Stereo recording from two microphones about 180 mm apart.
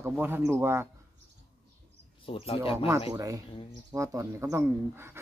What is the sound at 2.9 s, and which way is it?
Speech, 20° right (ahead or behind).